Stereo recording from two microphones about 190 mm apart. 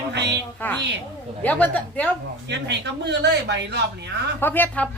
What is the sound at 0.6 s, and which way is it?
A woman's voice, 10° left (ahead or behind).